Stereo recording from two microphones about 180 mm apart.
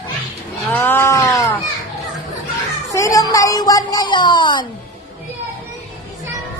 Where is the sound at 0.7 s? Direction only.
10° left (ahead or behind).